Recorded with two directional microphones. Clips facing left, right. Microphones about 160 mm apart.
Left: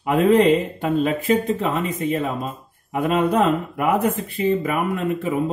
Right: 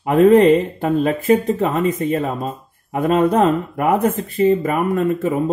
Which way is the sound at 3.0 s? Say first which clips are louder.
Right 4 dB; 40° right (ahead or behind).